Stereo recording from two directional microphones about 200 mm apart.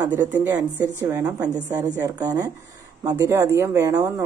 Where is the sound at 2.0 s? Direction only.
20° right (ahead or behind).